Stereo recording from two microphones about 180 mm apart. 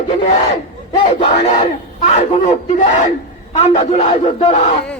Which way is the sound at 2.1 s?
35° left (ahead or behind).